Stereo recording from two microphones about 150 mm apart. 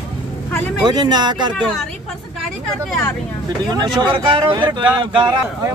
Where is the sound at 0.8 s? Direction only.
25° right (ahead or behind).